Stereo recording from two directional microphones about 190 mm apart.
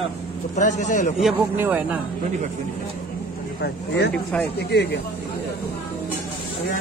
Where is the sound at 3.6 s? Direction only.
60° left (ahead or behind).